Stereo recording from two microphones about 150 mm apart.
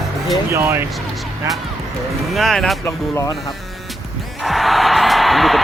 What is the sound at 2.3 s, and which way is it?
Speech, centre (ahead or behind).